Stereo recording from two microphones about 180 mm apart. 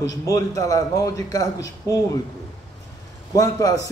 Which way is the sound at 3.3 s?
20° left (ahead or behind).